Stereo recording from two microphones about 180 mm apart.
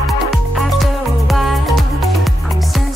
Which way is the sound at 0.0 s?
Centre (ahead or behind).